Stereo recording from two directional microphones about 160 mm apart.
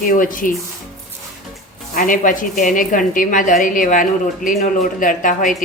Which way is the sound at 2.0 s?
55° left (ahead or behind).